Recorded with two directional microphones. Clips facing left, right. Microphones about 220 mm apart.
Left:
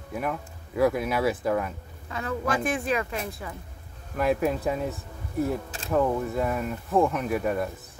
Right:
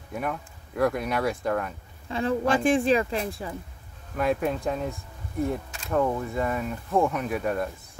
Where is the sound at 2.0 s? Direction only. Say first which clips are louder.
Right 4 dB; 30° right (ahead or behind).